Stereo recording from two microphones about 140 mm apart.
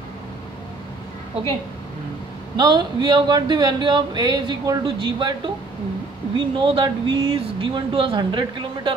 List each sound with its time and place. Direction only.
2.5 s speech: 30° right (ahead or behind)